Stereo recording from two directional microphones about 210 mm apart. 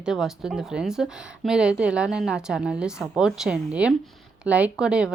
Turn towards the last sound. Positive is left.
turn(degrees=-5)  # may be behind; listen again after turning